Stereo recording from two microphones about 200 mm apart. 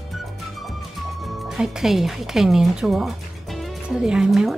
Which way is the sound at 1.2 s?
Centre (ahead or behind).